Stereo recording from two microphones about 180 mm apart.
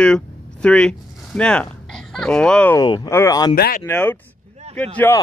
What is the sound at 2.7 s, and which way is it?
Speech, 20° left (ahead or behind).